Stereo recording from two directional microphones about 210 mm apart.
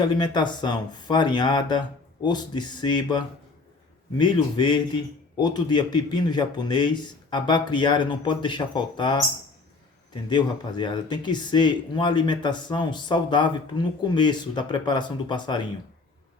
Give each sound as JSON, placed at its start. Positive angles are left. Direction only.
{"t": 0.2, "sound": "speech", "side_deg": 20}
{"t": 10.2, "sound": "speech", "side_deg": 20}